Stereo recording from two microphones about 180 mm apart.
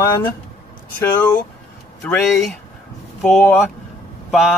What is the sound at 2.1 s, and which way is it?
Speech, centre (ahead or behind).